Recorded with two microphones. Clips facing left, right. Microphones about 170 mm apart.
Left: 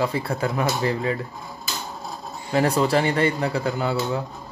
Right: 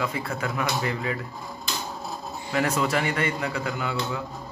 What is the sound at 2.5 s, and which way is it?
Speech, 35° left (ahead or behind).